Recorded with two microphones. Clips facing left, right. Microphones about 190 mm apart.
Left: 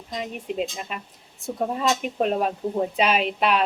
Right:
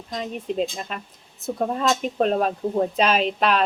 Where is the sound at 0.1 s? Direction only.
10° left (ahead or behind).